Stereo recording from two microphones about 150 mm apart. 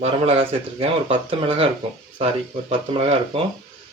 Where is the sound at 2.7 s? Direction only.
40° right (ahead or behind).